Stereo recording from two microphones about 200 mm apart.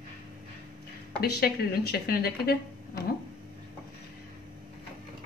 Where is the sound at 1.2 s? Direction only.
50° left (ahead or behind).